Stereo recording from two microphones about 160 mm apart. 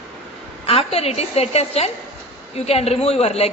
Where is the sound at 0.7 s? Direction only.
35° left (ahead or behind).